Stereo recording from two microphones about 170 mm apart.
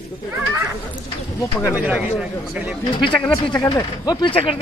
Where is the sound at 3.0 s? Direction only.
30° left (ahead or behind).